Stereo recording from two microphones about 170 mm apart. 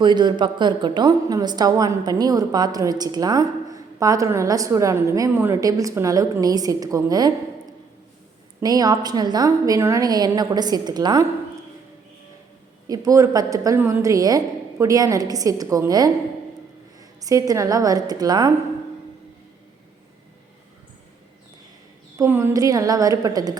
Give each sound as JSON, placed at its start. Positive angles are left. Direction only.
{"t": 0.0, "sound": "a woman's voice", "side_deg": -25}
{"t": 8.6, "sound": "a woman's voice", "side_deg": -20}
{"t": 12.9, "sound": "a woman's voice", "side_deg": -20}
{"t": 22.2, "sound": "a woman's voice", "side_deg": -15}